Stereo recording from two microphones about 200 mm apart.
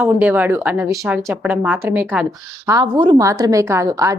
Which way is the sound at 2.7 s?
20° right (ahead or behind).